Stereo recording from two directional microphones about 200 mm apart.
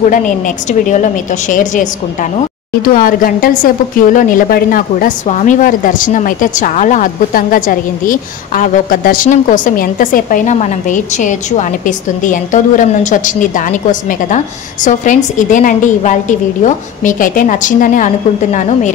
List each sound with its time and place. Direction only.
0.7 s a woman's voice: 35° left (ahead or behind)
2.9 s a woman's voice: 45° left (ahead or behind)
14.9 s a woman's voice: 40° left (ahead or behind)